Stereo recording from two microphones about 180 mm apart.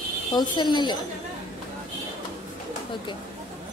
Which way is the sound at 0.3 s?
25° left (ahead or behind).